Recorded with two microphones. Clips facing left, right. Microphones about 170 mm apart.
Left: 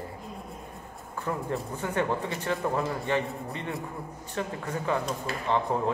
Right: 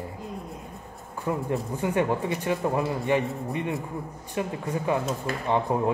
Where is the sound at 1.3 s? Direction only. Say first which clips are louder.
Right 4 dB; 15° right (ahead or behind).